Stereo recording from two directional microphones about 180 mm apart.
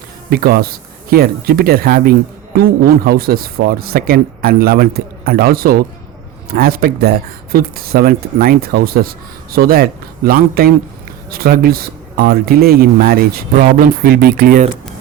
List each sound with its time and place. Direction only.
0.3 s speech: 60° right (ahead or behind)